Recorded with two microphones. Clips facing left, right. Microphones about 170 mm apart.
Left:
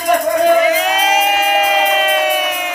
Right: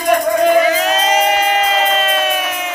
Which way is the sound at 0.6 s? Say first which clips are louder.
Even; 15° left (ahead or behind).